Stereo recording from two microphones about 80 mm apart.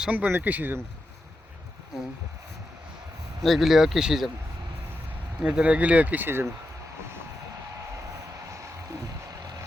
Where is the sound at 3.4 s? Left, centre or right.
Centre.